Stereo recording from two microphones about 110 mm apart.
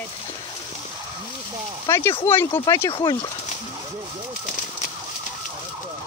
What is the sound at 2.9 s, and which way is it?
Speech, 45° left (ahead or behind).